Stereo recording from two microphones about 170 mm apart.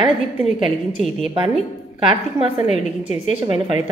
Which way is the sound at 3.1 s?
30° right (ahead or behind).